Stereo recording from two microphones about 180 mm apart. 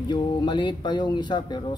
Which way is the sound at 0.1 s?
25° left (ahead or behind).